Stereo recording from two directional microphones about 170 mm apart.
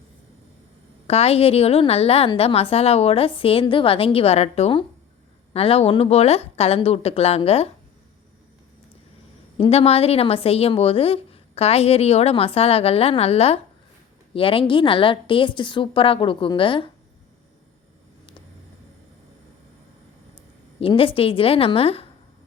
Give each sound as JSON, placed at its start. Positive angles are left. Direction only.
{"t": 1.0, "sound": "a woman's voice", "side_deg": 35}
{"t": 9.6, "sound": "a woman's voice", "side_deg": 35}
{"t": 20.8, "sound": "a woman's voice", "side_deg": 30}